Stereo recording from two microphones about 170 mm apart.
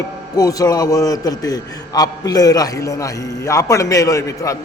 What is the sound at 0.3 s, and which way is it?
Speech, 20° left (ahead or behind).